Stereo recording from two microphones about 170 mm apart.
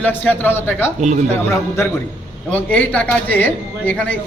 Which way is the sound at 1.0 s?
45° right (ahead or behind).